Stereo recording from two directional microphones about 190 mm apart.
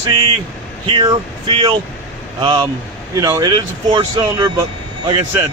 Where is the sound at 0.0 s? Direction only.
20° right (ahead or behind).